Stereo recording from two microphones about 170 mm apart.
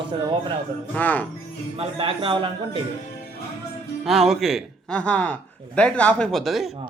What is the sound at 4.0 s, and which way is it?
Speech, centre (ahead or behind).